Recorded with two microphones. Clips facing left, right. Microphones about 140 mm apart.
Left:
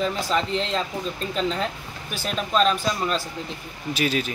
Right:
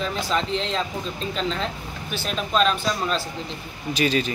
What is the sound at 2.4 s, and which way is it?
Speech, 5° left (ahead or behind).